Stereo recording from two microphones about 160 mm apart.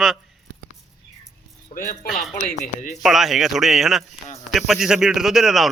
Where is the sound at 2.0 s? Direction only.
Centre (ahead or behind).